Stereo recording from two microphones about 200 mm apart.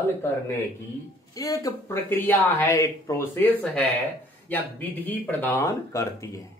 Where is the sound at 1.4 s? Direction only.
15° left (ahead or behind).